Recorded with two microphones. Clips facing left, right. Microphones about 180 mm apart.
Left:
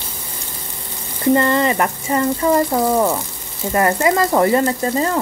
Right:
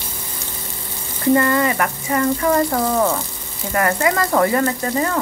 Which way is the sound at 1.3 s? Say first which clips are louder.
Left 1 dB; 25° left (ahead or behind).